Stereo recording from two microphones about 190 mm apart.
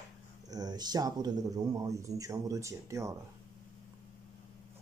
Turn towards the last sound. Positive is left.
turn(degrees=-15)  # may be behind; listen again after turning